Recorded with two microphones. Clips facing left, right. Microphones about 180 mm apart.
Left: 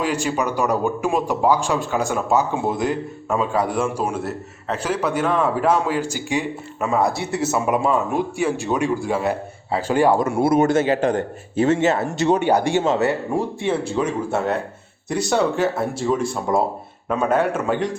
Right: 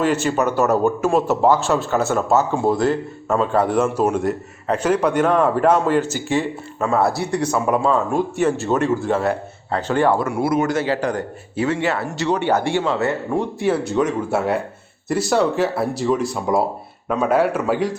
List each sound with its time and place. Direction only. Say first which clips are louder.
0.0 s speech: right 3 dB; 10° left (ahead or behind)
3.2 s speech: right 3 dB; 5° left (ahead or behind)
7.1 s speech: right 2 dB; centre (ahead or behind)
7.5 s speech: right 1 dB; 15° left (ahead or behind)
14.3 s speech: right 2 dB; 5° right (ahead or behind)